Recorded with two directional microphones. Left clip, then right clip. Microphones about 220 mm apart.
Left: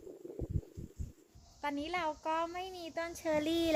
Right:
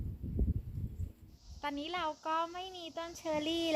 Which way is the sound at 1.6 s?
5° right (ahead or behind).